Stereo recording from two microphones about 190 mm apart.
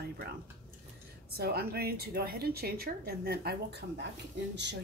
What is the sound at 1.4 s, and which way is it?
Speech, 55° right (ahead or behind).